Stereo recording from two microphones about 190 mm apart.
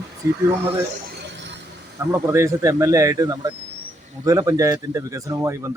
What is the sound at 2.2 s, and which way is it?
Speech, 15° right (ahead or behind).